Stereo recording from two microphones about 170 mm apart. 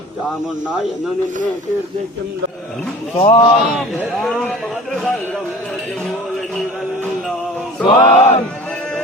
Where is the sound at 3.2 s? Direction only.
30° left (ahead or behind).